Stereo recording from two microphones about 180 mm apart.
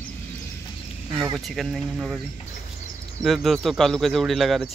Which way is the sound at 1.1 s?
25° right (ahead or behind).